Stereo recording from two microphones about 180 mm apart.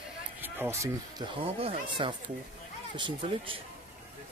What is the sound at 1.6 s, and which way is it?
Speech, 25° right (ahead or behind).